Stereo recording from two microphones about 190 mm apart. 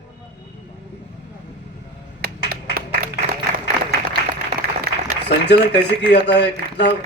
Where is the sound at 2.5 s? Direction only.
50° right (ahead or behind).